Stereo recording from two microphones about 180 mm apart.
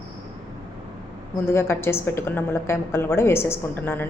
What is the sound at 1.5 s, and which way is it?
A woman's voice, 15° left (ahead or behind).